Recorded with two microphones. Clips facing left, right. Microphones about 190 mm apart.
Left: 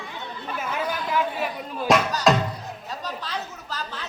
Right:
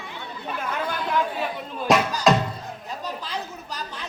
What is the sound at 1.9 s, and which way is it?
Speech, centre (ahead or behind).